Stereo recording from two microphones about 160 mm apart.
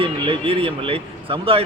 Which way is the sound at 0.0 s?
35° right (ahead or behind).